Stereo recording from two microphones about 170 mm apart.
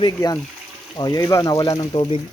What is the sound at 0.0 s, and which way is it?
Speech, 25° left (ahead or behind).